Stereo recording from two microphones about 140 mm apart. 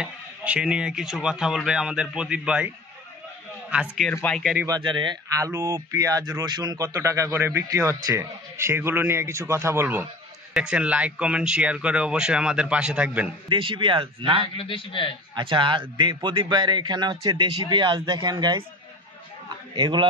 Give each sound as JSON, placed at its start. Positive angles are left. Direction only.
{"t": 0.0, "sound": "speech", "side_deg": -10}
{"t": 3.7, "sound": "a man's voice", "side_deg": -5}
{"t": 4.6, "sound": "speech", "side_deg": -35}
{"t": 13.5, "sound": "a man's voice", "side_deg": -35}
{"t": 14.6, "sound": "a man's voice", "side_deg": 40}
{"t": 15.3, "sound": "a man's voice", "side_deg": -35}
{"t": 19.7, "sound": "a man's voice", "side_deg": -35}